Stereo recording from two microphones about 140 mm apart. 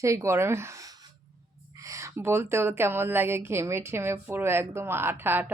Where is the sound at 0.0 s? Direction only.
20° right (ahead or behind).